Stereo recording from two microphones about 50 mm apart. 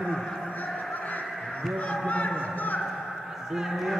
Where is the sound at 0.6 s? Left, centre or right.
Left.